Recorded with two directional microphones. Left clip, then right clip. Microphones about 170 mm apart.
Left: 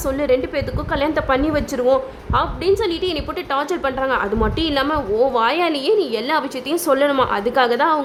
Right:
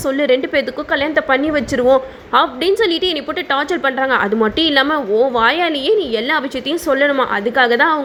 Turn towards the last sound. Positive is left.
turn(degrees=-10)  # may be behind; listen again after turning